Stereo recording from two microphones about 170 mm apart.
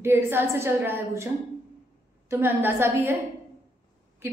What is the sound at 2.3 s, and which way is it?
Speech, 15° right (ahead or behind).